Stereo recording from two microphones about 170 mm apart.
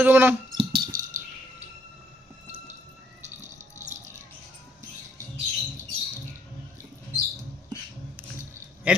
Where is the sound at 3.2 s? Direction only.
45° right (ahead or behind).